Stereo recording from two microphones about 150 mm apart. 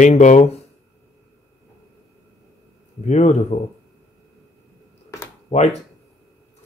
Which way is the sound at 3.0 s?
50° left (ahead or behind).